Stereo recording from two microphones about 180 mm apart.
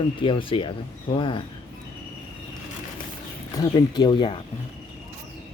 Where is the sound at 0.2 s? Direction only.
30° left (ahead or behind).